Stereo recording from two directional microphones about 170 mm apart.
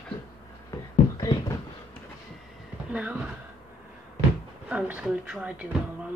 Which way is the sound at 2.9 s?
10° right (ahead or behind).